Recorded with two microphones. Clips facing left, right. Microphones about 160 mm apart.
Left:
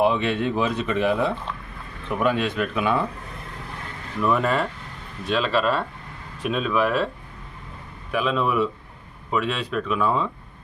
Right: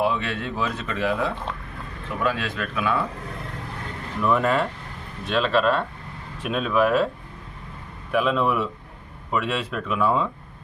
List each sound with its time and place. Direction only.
0.0 s speech: 20° left (ahead or behind)
4.2 s speech: centre (ahead or behind)
8.1 s speech: centre (ahead or behind)